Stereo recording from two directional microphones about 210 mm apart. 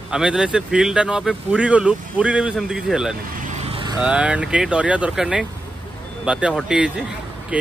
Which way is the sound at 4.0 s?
5° right (ahead or behind).